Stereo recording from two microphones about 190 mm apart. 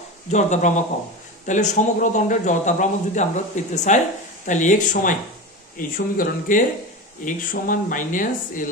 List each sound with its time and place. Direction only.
0.3 s speech: 40° left (ahead or behind)